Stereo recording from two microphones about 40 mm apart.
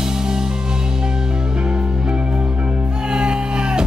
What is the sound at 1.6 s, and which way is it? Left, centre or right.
Music, right.